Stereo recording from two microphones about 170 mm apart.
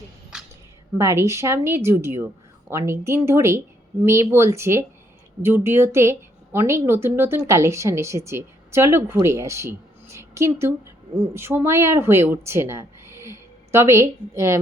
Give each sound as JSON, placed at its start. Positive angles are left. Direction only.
{"t": 0.9, "sound": "a woman's voice", "side_deg": -15}